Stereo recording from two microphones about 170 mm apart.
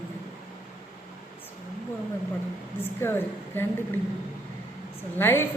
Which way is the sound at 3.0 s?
15° left (ahead or behind).